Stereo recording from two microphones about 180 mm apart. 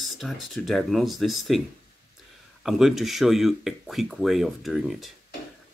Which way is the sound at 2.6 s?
Centre (ahead or behind).